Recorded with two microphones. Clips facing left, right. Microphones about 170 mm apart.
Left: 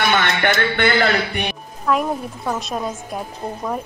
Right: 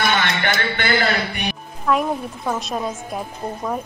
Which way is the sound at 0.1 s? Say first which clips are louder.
Left 2 dB; 50° left (ahead or behind).